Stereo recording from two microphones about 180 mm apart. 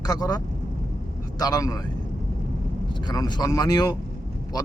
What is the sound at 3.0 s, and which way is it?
Speech, 20° left (ahead or behind).